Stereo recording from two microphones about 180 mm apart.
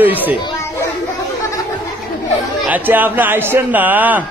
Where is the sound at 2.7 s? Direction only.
10° right (ahead or behind).